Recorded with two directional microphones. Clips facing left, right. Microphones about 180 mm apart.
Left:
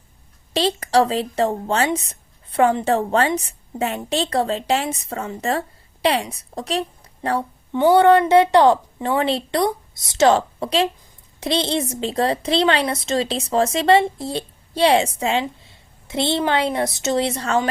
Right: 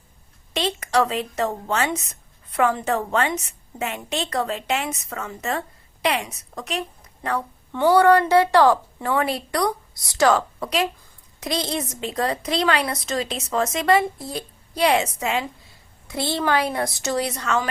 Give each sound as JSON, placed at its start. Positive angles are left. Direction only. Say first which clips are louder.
{"t": 0.5, "sound": "speech", "louder": "left 4 dB", "side_deg": 35}
{"t": 7.7, "sound": "a woman's voice", "louder": "left 2 dB", "side_deg": 20}